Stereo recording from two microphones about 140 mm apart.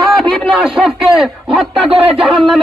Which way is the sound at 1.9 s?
40° right (ahead or behind).